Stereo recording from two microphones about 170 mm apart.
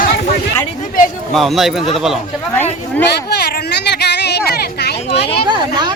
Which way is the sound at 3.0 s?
70° left (ahead or behind).